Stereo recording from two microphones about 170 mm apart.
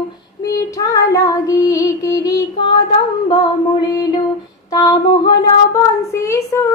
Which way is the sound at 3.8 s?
20° left (ahead or behind).